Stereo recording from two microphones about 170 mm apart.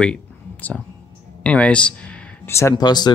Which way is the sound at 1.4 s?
5° left (ahead or behind).